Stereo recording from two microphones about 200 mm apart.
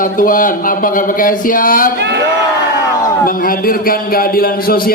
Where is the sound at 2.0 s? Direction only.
60° right (ahead or behind).